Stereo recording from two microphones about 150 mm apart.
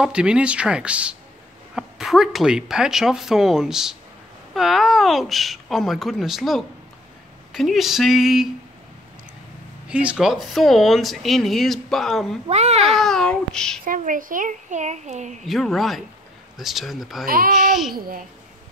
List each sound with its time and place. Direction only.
0.0 s speech: 5° right (ahead or behind)
9.8 s speech: 5° right (ahead or behind)
12.4 s speech: 45° right (ahead or behind)
13.0 s speech: 5° left (ahead or behind)
13.8 s a child's voice: 65° right (ahead or behind)
15.4 s speech: centre (ahead or behind)
17.3 s a child's voice: 65° right (ahead or behind)
17.9 s a child's voice: 80° right